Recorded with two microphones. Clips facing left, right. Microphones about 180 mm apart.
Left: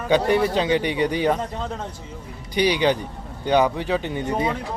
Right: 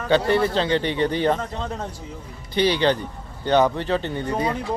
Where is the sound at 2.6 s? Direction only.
15° left (ahead or behind).